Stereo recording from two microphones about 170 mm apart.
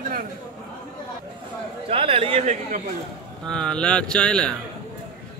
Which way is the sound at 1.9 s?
35° right (ahead or behind).